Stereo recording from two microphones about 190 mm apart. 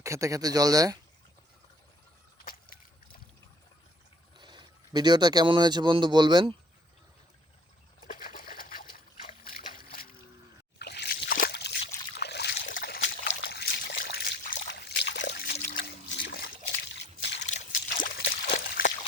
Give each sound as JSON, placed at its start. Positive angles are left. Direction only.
{"t": 0.0, "sound": "speech", "side_deg": -15}
{"t": 2.4, "sound": "boat", "side_deg": 50}
{"t": 4.4, "sound": "speech", "side_deg": -25}
{"t": 8.0, "sound": "trickle", "side_deg": 45}
{"t": 10.8, "sound": "a sound", "side_deg": 60}
{"t": 12.2, "sound": "trickle", "side_deg": 60}
{"t": 12.6, "sound": "a sound", "side_deg": 50}
{"t": 13.4, "sound": "trickle", "side_deg": 60}
{"t": 17.4, "sound": "a sound", "side_deg": 40}